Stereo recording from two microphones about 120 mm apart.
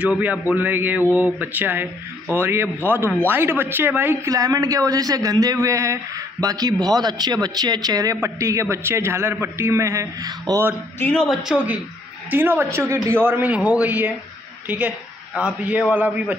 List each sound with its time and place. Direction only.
0.0 s speech: 10° right (ahead or behind)
11.0 s a woman's voice: 10° left (ahead or behind)
11.2 s a woman's voice: 5° right (ahead or behind)